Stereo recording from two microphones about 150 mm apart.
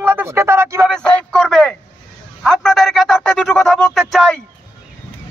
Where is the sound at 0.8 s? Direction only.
5° left (ahead or behind).